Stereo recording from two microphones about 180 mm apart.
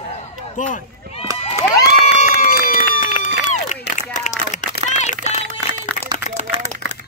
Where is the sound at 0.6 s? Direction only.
45° left (ahead or behind).